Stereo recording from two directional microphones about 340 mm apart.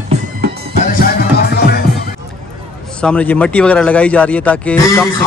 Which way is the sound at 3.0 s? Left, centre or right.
Centre.